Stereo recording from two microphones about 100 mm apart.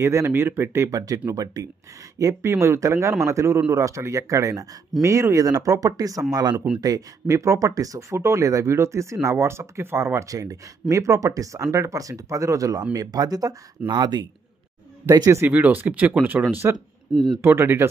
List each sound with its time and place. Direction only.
0.0 s a man's voice: 25° right (ahead or behind)
6.5 s speech: 10° right (ahead or behind)
6.8 s speech: 35° right (ahead or behind)
15.4 s a man's voice: 20° right (ahead or behind)